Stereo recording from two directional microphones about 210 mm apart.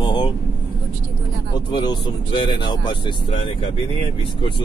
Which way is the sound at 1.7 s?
20° left (ahead or behind).